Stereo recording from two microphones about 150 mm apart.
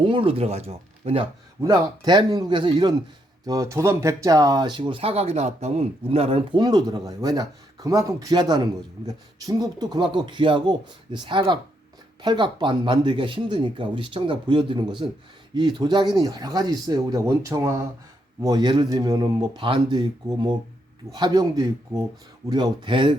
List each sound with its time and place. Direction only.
0.0 s speech: 35° right (ahead or behind)
1.6 s speech: 25° right (ahead or behind)